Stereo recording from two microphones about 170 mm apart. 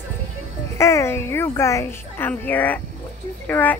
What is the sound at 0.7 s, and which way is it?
A child's voice, 15° left (ahead or behind).